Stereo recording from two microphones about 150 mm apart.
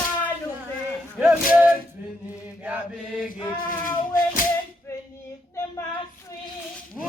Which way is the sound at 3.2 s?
65° left (ahead or behind).